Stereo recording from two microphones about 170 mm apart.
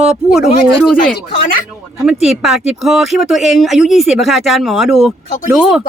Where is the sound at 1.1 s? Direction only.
55° left (ahead or behind).